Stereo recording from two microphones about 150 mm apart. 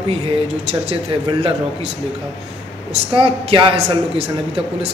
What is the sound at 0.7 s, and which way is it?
A man's voice, 40° right (ahead or behind).